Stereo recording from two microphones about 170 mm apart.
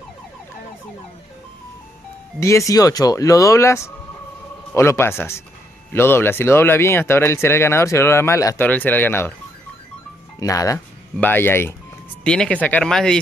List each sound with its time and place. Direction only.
2.4 s speech: 20° left (ahead or behind)
10.4 s speech: 20° left (ahead or behind); by 13.2 s 5° left (ahead or behind)